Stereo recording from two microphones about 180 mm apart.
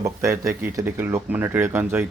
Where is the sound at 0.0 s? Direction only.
15° right (ahead or behind).